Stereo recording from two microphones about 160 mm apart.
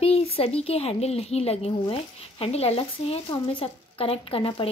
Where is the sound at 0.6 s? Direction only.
40° left (ahead or behind).